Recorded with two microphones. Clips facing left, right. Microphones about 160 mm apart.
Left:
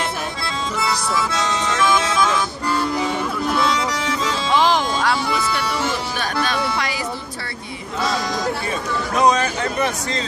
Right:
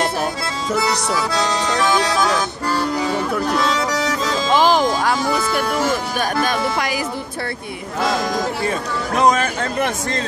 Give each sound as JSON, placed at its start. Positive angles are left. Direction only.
{"t": 1.3, "sound": "music", "side_deg": -35}
{"t": 4.6, "sound": "music", "side_deg": -10}
{"t": 5.2, "sound": "speech", "side_deg": -45}
{"t": 8.6, "sound": "speech", "side_deg": -55}